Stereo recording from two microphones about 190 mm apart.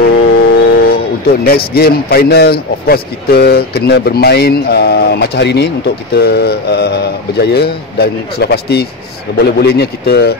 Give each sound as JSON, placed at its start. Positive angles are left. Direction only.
{"t": 0.0, "sound": "speech", "side_deg": 55}